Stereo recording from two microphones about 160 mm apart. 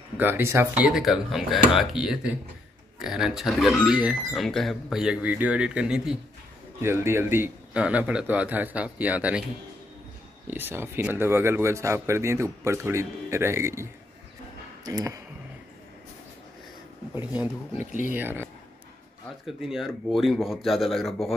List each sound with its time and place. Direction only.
0.2 s speech: 15° right (ahead or behind)
6.8 s speech: 15° right (ahead or behind)
10.4 s speech: 10° right (ahead or behind)
14.9 s speech: 20° right (ahead or behind)
17.1 s speech: 10° right (ahead or behind)
17.7 s speech: 50° left (ahead or behind)
18.1 s speech: 15° right (ahead or behind)